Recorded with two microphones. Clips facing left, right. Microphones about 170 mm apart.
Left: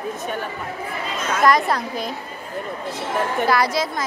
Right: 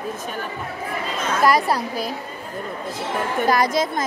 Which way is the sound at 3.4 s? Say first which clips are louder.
Right 2 dB; 45° right (ahead or behind).